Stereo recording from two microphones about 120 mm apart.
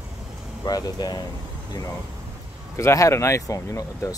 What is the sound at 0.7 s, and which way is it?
Speech, 35° left (ahead or behind).